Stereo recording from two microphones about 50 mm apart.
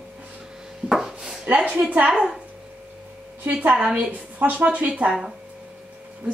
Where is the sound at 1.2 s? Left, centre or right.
Centre.